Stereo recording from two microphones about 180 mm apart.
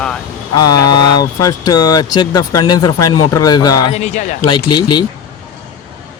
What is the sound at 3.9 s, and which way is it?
Speech, 40° left (ahead or behind).